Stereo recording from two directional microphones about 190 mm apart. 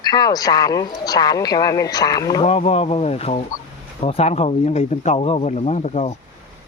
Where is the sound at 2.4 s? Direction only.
35° left (ahead or behind).